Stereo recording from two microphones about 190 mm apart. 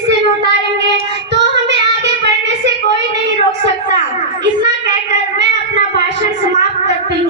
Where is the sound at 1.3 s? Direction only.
65° right (ahead or behind).